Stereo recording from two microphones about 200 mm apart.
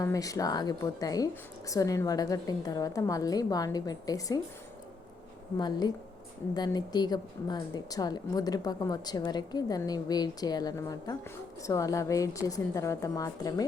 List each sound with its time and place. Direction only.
0.0 s a woman's voice: 15° left (ahead or behind)
5.5 s a woman's voice: 20° left (ahead or behind)